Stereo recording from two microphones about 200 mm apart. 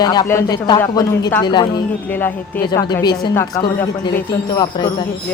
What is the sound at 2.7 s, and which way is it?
A man's voice, 20° left (ahead or behind).